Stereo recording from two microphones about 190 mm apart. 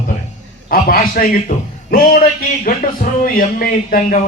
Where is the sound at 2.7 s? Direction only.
45° left (ahead or behind).